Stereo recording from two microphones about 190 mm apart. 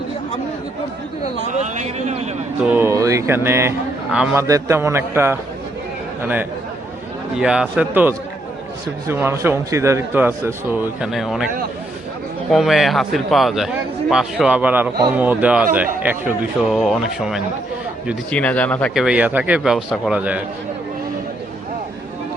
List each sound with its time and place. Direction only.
1.5 s speech: 35° right (ahead or behind)
2.6 s a man's voice: 10° right (ahead or behind)
7.3 s a man's voice: 5° right (ahead or behind)
12.5 s a man's voice: centre (ahead or behind)
19.0 s a man's voice: 10° right (ahead or behind)